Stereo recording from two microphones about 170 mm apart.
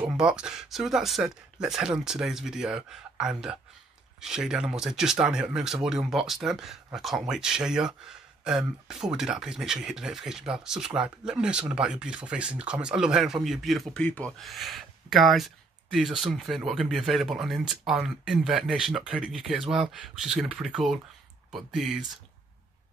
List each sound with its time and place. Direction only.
0.0 s speech: 5° right (ahead or behind)